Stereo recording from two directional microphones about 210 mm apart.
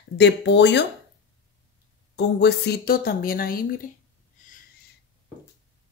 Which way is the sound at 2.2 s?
55° left (ahead or behind).